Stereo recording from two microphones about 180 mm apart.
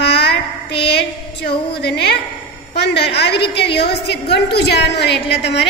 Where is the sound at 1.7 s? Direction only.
65° left (ahead or behind).